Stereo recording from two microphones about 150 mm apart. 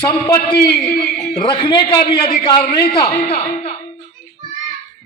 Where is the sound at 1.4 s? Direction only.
35° left (ahead or behind).